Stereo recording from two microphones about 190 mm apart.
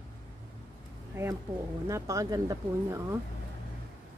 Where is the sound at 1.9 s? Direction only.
15° right (ahead or behind).